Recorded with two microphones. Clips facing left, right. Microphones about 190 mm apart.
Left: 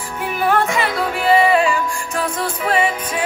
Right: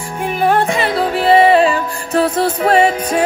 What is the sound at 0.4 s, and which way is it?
Music, 30° right (ahead or behind).